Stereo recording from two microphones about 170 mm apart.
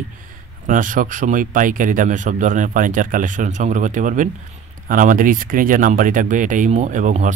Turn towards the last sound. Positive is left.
turn(degrees=-45)  # may be behind; listen again after turning